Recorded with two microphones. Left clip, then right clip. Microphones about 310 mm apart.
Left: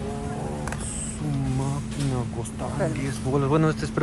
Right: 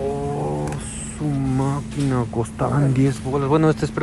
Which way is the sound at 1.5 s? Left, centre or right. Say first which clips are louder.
Right 7 dB; centre.